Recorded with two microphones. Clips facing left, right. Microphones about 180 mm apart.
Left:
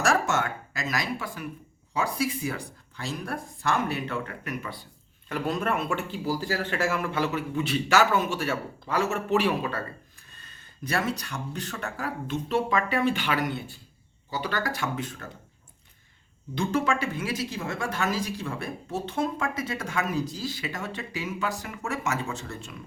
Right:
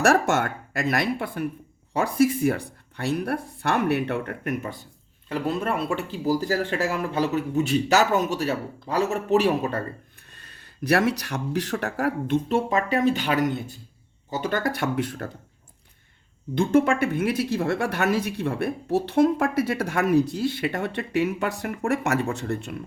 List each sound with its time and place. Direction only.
0.0 s speech: 60° right (ahead or behind)
5.3 s speech: 30° right (ahead or behind)
10.3 s speech: 70° right (ahead or behind)
16.6 s speech: 55° right (ahead or behind)